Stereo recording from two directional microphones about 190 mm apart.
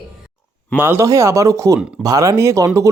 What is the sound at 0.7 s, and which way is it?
Speech, 10° right (ahead or behind).